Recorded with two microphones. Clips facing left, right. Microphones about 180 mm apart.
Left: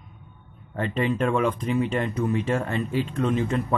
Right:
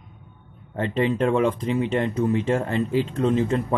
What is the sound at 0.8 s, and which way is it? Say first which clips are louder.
Speech: right 2 dB; 25° right (ahead or behind).